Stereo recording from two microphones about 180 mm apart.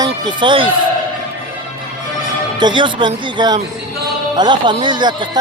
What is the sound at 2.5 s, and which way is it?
Speech, 25° right (ahead or behind).